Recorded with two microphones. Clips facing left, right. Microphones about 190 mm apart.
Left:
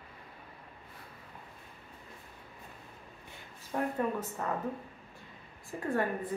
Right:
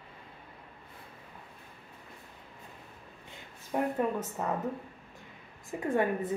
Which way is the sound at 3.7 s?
20° right (ahead or behind).